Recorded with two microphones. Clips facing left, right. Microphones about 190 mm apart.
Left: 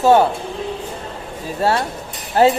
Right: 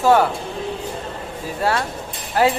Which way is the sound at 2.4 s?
25° left (ahead or behind).